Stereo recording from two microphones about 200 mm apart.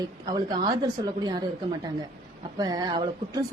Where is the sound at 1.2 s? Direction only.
20° right (ahead or behind).